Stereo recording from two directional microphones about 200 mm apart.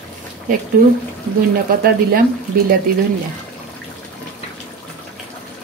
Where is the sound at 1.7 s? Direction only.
45° right (ahead or behind).